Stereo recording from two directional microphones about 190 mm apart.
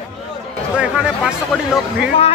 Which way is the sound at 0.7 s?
5° right (ahead or behind).